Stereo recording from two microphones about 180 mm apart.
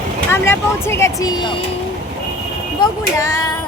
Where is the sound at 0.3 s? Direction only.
15° left (ahead or behind).